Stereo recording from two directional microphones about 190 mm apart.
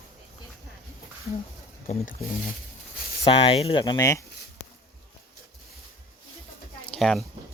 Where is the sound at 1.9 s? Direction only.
35° left (ahead or behind).